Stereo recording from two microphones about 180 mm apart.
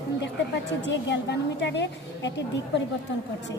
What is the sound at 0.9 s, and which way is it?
A woman's voice, 80° left.